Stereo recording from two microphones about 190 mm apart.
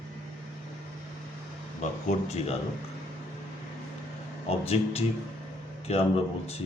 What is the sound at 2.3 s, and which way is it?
Speech, 35° left (ahead or behind).